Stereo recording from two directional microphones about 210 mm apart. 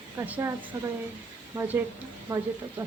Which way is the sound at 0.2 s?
10° right (ahead or behind).